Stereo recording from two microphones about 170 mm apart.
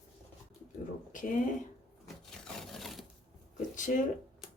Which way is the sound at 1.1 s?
50° left (ahead or behind).